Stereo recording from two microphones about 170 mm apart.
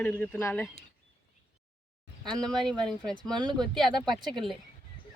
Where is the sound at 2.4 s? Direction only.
5° left (ahead or behind).